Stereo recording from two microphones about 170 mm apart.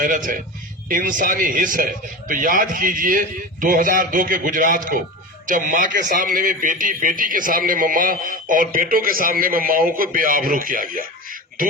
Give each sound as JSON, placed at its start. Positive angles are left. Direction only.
{"t": 0.0, "sound": "a man's voice", "side_deg": -50}